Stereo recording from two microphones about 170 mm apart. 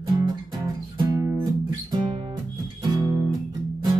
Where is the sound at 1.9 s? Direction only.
25° right (ahead or behind).